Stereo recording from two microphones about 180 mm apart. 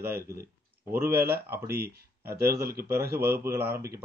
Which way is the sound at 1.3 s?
10° right (ahead or behind).